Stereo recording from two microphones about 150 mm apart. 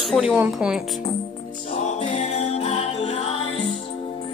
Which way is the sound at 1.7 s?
45° left (ahead or behind).